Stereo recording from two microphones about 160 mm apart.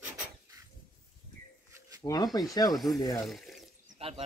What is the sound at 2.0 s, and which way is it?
Speech, 25° left (ahead or behind).